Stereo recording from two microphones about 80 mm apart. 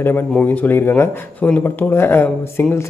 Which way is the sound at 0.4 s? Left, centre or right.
Left.